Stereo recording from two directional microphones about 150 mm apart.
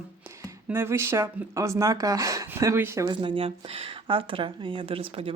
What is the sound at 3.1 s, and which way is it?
Speech, 30° right (ahead or behind).